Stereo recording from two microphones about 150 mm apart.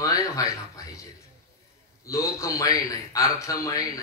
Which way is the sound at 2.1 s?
20° left (ahead or behind).